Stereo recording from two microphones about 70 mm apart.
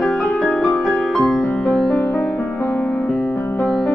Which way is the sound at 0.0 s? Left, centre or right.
Centre.